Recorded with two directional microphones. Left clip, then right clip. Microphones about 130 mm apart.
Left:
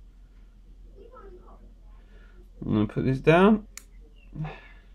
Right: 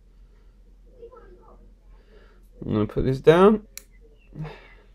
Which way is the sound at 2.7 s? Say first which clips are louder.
Right 3 dB; 45° right (ahead or behind).